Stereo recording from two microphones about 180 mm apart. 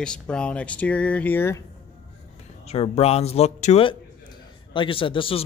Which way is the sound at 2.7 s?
35° left (ahead or behind).